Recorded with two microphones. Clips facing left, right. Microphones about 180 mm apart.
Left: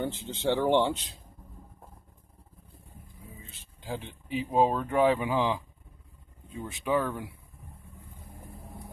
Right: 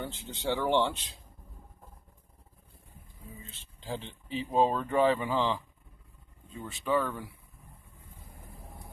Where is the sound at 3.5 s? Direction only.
10° left (ahead or behind).